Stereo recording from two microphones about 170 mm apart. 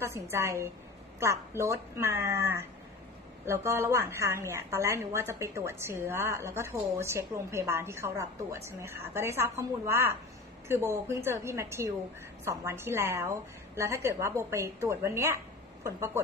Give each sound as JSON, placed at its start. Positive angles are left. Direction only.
{"t": 0.0, "sound": "a woman's voice", "side_deg": -15}